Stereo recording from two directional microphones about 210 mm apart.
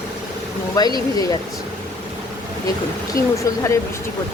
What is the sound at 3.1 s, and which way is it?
Speech, 15° left (ahead or behind).